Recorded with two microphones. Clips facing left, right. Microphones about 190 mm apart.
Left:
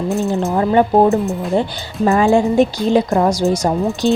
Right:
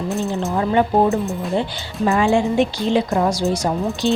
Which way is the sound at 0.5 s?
40° left (ahead or behind).